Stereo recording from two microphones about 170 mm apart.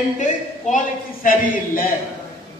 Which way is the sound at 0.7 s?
55° left (ahead or behind).